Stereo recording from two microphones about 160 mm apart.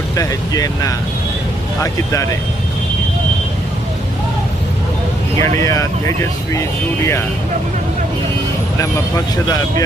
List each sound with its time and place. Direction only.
0.2 s speech: 20° left (ahead or behind)
5.4 s speech: 20° left (ahead or behind)
8.8 s speech: 20° left (ahead or behind)